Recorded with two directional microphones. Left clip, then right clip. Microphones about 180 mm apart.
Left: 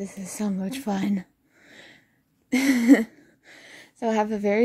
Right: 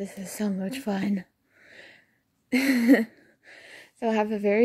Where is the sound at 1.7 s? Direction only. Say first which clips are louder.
Even; 15° right (ahead or behind).